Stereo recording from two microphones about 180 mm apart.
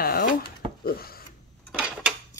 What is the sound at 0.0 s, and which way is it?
Drawer open or close, 55° left (ahead or behind).